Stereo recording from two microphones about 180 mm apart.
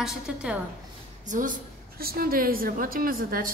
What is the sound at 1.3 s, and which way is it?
A woman's voice, 45° right (ahead or behind).